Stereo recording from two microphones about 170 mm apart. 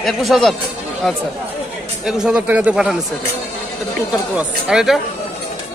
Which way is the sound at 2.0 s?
5° right (ahead or behind).